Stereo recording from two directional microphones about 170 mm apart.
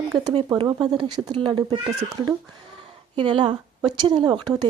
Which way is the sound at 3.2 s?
30° right (ahead or behind).